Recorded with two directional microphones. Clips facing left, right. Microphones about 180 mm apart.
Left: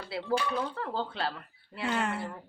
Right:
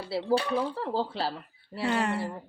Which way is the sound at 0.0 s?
30° right (ahead or behind).